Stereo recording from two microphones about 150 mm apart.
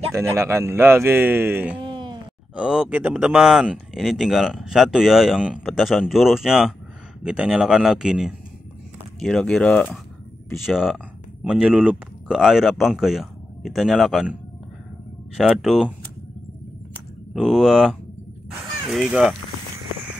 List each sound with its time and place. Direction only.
0.1 s speech: 20° right (ahead or behind)
1.8 s a sound: 30° right (ahead or behind)
2.5 s speech: 5° right (ahead or behind)
10.5 s speech: centre (ahead or behind)
15.3 s speech: centre (ahead or behind)
17.3 s speech: centre (ahead or behind)